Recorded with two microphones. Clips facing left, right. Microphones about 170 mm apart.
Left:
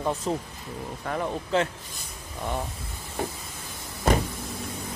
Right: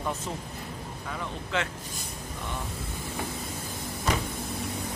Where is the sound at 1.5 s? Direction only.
35° left (ahead or behind).